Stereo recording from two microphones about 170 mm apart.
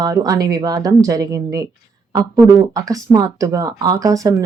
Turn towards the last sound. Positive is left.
turn(degrees=-20)  # may be behind; listen again after turning